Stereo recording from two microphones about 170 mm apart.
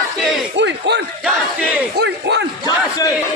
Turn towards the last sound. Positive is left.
turn(degrees=-80)